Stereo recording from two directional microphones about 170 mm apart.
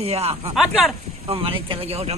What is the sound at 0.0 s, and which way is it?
Speech, 35° right (ahead or behind).